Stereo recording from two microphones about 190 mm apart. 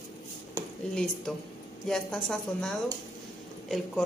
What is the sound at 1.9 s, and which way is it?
A woman's voice, 5° left (ahead or behind).